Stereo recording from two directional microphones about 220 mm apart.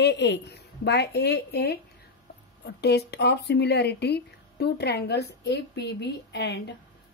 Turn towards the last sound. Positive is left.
turn(degrees=50)  # may be behind; listen again after turning